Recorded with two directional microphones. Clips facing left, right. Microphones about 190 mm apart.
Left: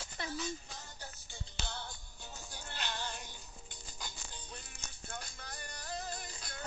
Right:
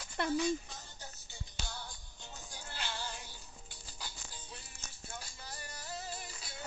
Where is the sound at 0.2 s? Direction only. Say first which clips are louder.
Right 8 dB; 60° right (ahead or behind).